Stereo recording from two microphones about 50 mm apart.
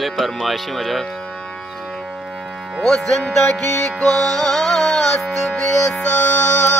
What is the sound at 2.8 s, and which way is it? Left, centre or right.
Music, centre.